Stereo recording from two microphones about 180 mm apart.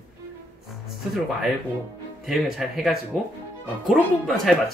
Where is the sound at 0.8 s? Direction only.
Centre (ahead or behind).